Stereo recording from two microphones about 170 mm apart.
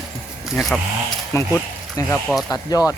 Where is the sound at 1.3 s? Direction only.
15° left (ahead or behind).